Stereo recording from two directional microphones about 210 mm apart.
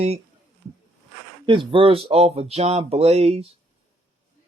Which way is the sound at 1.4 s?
25° right (ahead or behind).